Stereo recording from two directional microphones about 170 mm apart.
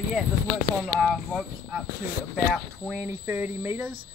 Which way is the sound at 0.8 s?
5° right (ahead or behind).